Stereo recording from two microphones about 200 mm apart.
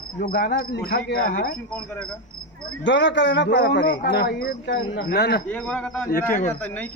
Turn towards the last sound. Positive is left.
turn(degrees=45)  # may be behind; listen again after turning